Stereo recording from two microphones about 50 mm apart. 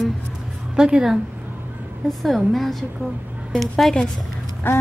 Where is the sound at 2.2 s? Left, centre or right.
Centre.